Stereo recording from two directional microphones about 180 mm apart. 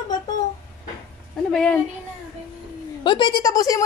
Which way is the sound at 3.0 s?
25° left (ahead or behind).